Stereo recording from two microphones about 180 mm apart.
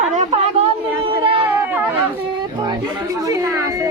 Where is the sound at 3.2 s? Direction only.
15° right (ahead or behind).